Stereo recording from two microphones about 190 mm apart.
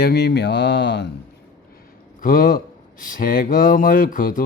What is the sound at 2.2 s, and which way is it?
Speech, 45° left (ahead or behind).